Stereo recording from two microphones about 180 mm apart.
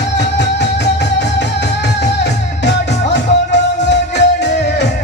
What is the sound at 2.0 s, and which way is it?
Music, 70° left (ahead or behind).